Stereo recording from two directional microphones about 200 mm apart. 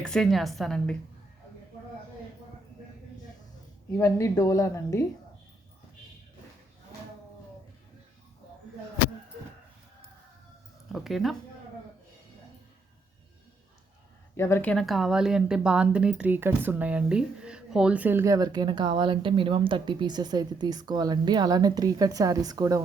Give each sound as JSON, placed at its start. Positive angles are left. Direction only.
{"t": 0.0, "sound": "a woman's voice", "side_deg": 0}
{"t": 3.9, "sound": "a woman's voice", "side_deg": 15}
{"t": 10.9, "sound": "a woman's voice", "side_deg": 0}
{"t": 14.3, "sound": "a woman's voice", "side_deg": 15}